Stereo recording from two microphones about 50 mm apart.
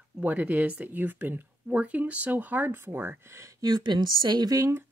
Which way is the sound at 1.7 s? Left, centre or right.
Right.